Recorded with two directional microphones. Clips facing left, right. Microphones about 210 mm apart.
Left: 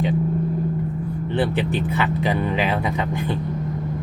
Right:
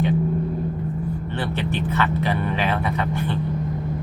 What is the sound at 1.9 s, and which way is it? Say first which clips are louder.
Speech: left 1 dB; 15° left (ahead or behind).